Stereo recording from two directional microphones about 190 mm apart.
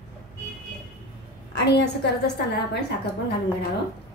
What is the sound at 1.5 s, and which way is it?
A woman's voice, 60° left (ahead or behind).